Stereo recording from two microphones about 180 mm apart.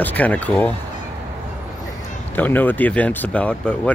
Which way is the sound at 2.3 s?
10° left (ahead or behind).